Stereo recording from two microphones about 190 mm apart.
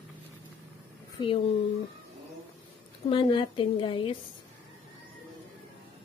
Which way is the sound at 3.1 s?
25° left (ahead or behind).